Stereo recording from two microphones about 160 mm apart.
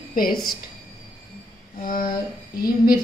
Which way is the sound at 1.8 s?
65° left (ahead or behind).